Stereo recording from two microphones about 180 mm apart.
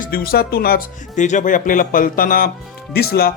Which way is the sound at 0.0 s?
55° left (ahead or behind).